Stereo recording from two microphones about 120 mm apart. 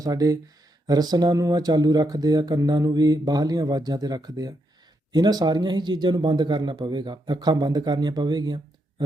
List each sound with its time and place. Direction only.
0.0 s a man's voice: 30° right (ahead or behind)